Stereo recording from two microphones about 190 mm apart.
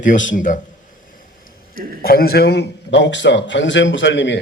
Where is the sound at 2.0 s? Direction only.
55° left (ahead or behind).